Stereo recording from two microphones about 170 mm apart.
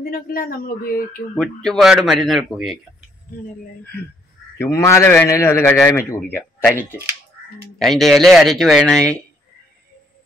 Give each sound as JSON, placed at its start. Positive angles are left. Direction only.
{"t": 0.1, "sound": "speech", "side_deg": 60}
{"t": 1.3, "sound": "speech", "side_deg": 5}
{"t": 4.6, "sound": "a man's voice", "side_deg": 15}
{"t": 6.7, "sound": "speech", "side_deg": -10}
{"t": 7.8, "sound": "speech", "side_deg": 0}